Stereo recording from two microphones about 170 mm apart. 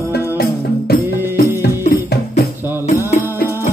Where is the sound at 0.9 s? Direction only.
65° left (ahead or behind).